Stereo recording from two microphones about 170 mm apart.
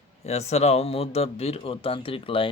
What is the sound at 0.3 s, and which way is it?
A man's voice, 40° left (ahead or behind).